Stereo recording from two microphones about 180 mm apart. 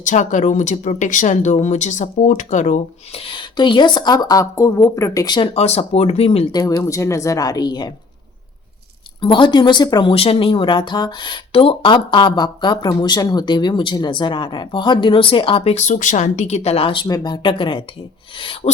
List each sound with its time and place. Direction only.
0.0 s speech: 45° left (ahead or behind)
3.2 s speech: 25° left (ahead or behind)
5.5 s speech: 35° left (ahead or behind)
6.5 s speech: 20° left (ahead or behind)
9.2 s speech: 25° left (ahead or behind)